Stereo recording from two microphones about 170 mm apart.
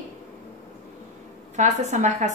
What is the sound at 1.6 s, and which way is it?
Speech, 45° right (ahead or behind).